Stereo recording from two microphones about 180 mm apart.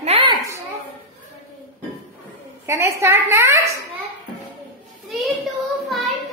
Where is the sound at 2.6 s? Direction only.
15° right (ahead or behind).